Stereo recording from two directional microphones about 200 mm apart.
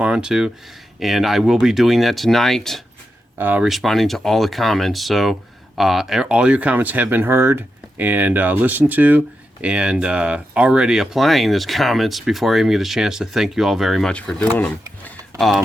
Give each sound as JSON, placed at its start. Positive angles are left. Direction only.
{"t": 0.0, "sound": "speech", "side_deg": -5}